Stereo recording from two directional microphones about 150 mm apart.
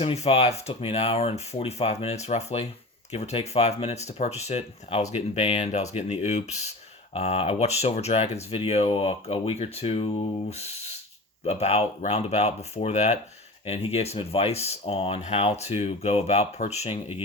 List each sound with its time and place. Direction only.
0.0 s speech: 45° left (ahead or behind)